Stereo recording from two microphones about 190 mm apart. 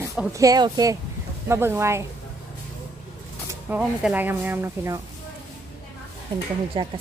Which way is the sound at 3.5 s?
5° right (ahead or behind).